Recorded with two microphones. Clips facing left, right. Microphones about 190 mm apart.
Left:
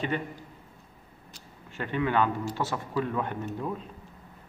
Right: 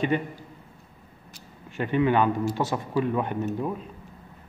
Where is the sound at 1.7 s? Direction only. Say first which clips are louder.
Right 6 dB; 15° right (ahead or behind).